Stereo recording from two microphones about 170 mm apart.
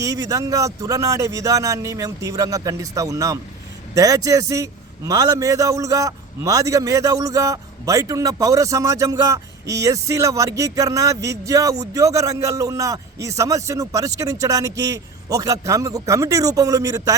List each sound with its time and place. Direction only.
0.0 s a man's voice: 20° right (ahead or behind)